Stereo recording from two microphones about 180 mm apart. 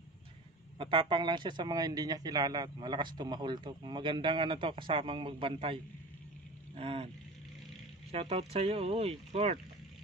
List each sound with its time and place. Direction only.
0.7 s speech: 30° right (ahead or behind)
6.8 s speech: 30° right (ahead or behind)
8.1 s speech: 35° right (ahead or behind)